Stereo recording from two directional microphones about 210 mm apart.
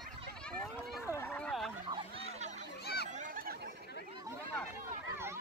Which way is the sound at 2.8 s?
50° left (ahead or behind).